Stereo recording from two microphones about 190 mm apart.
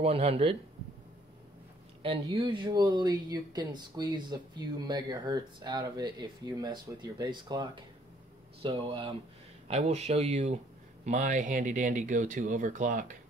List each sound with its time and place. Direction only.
0.0 s speech: 30° right (ahead or behind)
2.3 s speech: 25° right (ahead or behind); by 13.2 s 40° right (ahead or behind)